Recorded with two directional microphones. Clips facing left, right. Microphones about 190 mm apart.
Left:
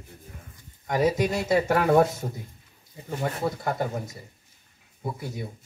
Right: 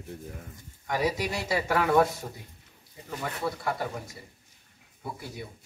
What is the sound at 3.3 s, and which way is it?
Speech, 45° left (ahead or behind).